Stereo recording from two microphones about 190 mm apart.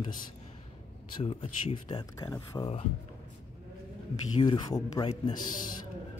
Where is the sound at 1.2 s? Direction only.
30° left (ahead or behind).